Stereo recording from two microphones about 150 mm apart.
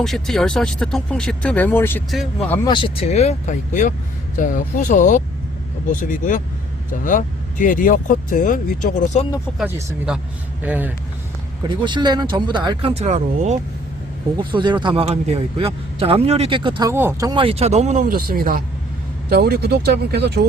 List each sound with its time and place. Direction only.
0.0 s speech: centre (ahead or behind)
2.6 s speech: 35° left (ahead or behind); by 9.2 s 55° left (ahead or behind)
9.5 s speech: 5° left (ahead or behind)
10.1 s speech: 5° right (ahead or behind)
11.7 s a man's voice: 30° right (ahead or behind)
12.9 s speech: 50° right (ahead or behind)
14.3 s a man's voice: 30° right (ahead or behind)
16.9 s speech: 15° right (ahead or behind)
17.2 s speech: 35° right (ahead or behind)
18.1 s speech: 70° right (ahead or behind)
19.3 s speech: 90° right